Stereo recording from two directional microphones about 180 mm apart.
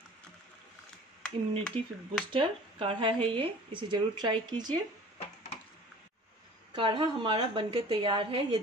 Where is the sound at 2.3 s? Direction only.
30° right (ahead or behind).